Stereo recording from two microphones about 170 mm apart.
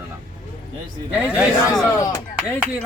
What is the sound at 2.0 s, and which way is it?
Speech, 15° left (ahead or behind).